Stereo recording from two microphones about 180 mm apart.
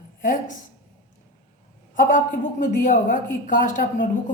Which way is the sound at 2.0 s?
45° left (ahead or behind).